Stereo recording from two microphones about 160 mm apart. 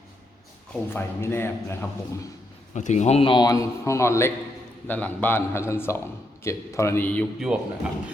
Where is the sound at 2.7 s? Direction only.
45° left (ahead or behind); by 7.3 s 10° left (ahead or behind).